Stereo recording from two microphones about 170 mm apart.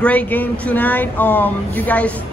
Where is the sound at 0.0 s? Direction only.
10° left (ahead or behind).